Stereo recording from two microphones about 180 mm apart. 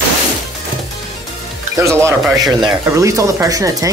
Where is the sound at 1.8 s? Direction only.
15° right (ahead or behind).